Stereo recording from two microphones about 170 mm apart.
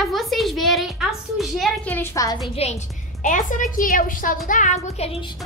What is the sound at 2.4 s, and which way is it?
Speech, 35° left (ahead or behind).